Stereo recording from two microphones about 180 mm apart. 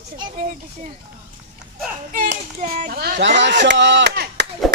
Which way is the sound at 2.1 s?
45° right (ahead or behind).